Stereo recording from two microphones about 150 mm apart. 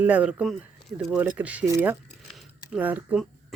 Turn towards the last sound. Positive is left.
turn(degrees=-10)  # may be behind; listen again after turning